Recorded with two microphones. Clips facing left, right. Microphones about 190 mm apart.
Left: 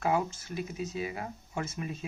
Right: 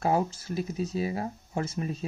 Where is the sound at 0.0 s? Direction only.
35° right (ahead or behind).